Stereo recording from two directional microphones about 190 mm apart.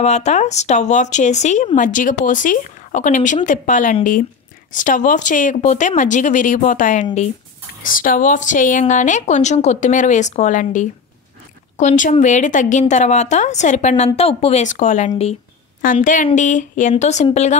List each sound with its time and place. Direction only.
0.0 s a woman's voice: 35° left (ahead or behind)